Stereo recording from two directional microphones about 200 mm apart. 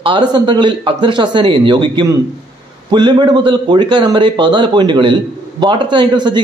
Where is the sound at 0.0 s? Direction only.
25° right (ahead or behind).